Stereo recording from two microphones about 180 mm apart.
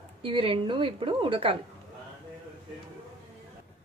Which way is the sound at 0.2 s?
30° right (ahead or behind).